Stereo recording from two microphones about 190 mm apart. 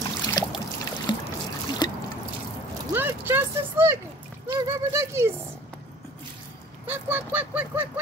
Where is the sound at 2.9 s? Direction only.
10° right (ahead or behind).